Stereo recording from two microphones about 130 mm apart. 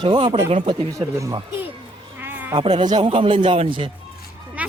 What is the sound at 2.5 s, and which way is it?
Speech, 45° right (ahead or behind).